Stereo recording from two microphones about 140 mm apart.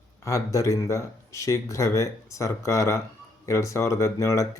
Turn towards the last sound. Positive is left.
turn(degrees=20)  # may be behind; listen again after turning